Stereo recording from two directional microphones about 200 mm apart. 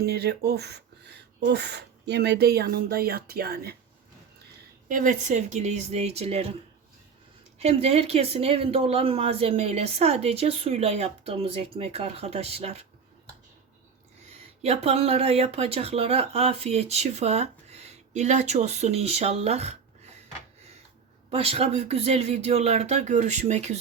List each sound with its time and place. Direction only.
0.0 s speech: 55° right (ahead or behind)
4.9 s speech: 40° right (ahead or behind)
7.6 s speech: 30° right (ahead or behind)
14.3 s speech: 30° right (ahead or behind)
21.2 s speech: 30° right (ahead or behind)